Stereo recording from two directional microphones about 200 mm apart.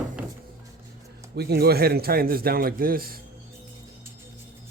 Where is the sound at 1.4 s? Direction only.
50° right (ahead or behind).